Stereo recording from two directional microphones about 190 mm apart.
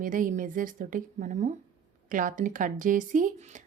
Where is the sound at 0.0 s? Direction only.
45° right (ahead or behind).